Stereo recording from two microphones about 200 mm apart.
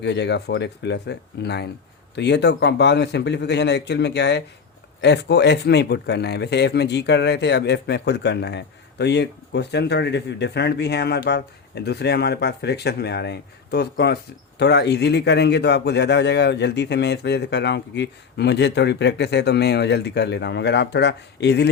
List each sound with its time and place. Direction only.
0.0 s speech: 60° left (ahead or behind)